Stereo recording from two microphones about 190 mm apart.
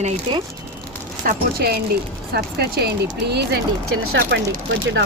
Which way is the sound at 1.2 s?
50° right (ahead or behind).